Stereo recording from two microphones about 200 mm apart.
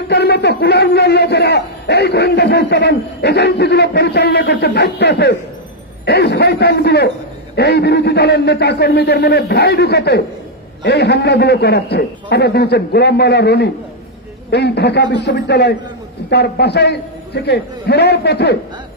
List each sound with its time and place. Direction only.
0.1 s a man's voice: 55° left (ahead or behind)